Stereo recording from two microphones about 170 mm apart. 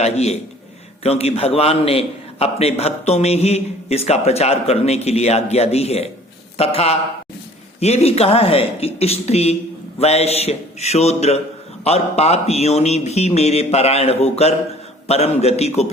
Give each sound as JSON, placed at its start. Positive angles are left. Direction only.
{"t": 0.0, "sound": "a man's voice", "side_deg": 40}